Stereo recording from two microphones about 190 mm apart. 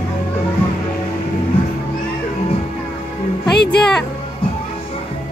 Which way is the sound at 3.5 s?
60° left (ahead or behind).